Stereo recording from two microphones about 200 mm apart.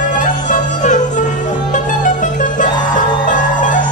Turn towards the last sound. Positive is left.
turn(degrees=40)  # may be behind; listen again after turning